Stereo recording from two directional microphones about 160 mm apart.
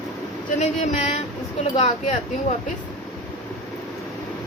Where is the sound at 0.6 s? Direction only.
45° left (ahead or behind).